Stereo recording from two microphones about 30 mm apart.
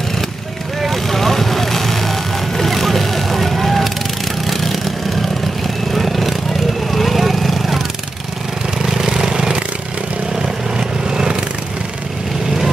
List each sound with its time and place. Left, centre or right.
0.8 s vehicle: centre
5.9 s vehicle: centre
8.8 s vehicle: centre